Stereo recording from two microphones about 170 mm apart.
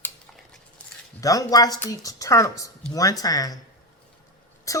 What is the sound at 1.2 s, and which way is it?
A woman's voice, 20° left (ahead or behind).